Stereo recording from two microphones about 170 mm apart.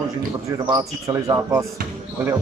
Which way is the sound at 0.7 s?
20° right (ahead or behind).